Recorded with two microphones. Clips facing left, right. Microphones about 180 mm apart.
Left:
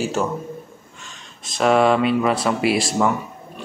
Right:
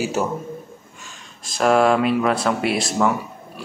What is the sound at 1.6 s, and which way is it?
Speech, centre (ahead or behind).